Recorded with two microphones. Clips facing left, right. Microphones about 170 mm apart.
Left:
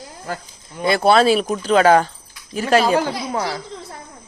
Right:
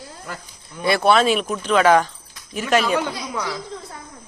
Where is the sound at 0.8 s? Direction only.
25° left (ahead or behind).